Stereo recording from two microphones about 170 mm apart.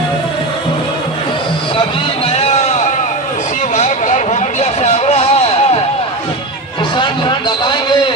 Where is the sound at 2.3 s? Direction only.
40° left (ahead or behind).